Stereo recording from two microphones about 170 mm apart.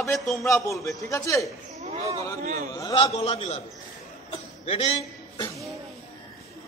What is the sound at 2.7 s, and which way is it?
Speech, 25° left (ahead or behind).